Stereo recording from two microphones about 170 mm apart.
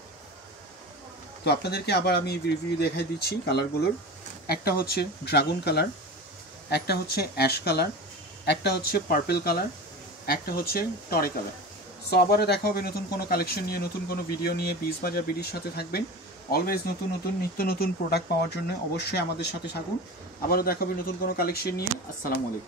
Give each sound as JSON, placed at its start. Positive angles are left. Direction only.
{"t": 1.4, "sound": "speech", "side_deg": 75}
{"t": 20.4, "sound": "speech", "side_deg": 60}